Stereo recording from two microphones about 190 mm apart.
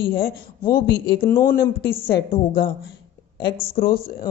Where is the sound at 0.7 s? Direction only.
50° left (ahead or behind).